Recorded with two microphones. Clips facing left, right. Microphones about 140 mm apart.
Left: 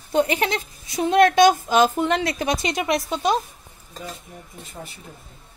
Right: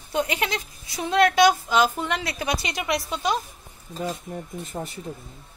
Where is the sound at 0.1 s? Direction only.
35° left (ahead or behind).